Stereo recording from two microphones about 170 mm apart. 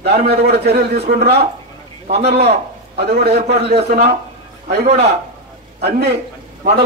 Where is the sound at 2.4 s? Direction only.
75° right (ahead or behind).